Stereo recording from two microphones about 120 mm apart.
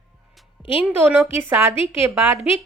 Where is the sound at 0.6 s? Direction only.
50° left (ahead or behind).